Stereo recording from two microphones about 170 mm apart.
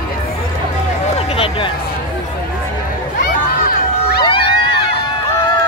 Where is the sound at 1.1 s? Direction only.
35° left (ahead or behind).